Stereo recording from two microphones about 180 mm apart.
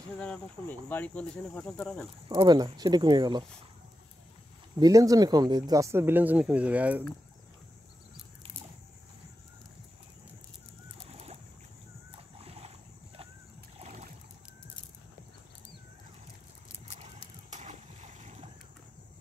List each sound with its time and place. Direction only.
0.2 s speech: 10° left (ahead or behind)
2.2 s speech: 25° right (ahead or behind)
4.7 s speech: 20° right (ahead or behind)
11.1 s boat: 35° right (ahead or behind)
12.4 s boat: 35° right (ahead or behind)
13.7 s rowboat: 35° right (ahead or behind)
16.8 s boat: 40° right (ahead or behind)